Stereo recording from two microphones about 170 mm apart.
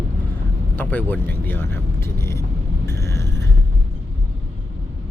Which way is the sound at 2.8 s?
15° left (ahead or behind).